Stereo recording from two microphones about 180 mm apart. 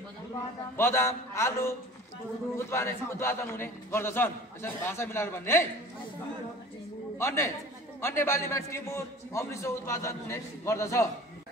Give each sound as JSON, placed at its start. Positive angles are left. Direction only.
{"t": 0.7, "sound": "a man's voice", "side_deg": 15}
{"t": 7.2, "sound": "a man's voice", "side_deg": 15}